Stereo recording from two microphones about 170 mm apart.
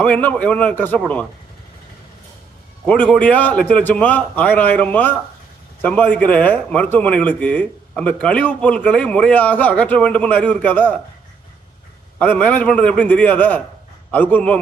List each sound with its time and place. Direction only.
0.0 s speech: 10° left (ahead or behind)
2.8 s speech: 10° left (ahead or behind)
12.2 s speech: 10° left (ahead or behind)